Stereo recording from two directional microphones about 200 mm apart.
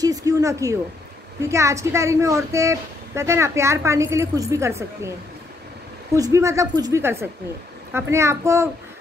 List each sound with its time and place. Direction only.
0.0 s a sound: 15° right (ahead or behind)
1.4 s speech: 15° right (ahead or behind)
6.1 s speech: 15° right (ahead or behind)